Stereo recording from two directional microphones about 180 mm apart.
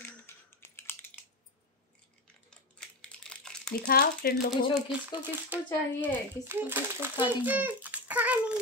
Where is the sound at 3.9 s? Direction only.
60° left (ahead or behind).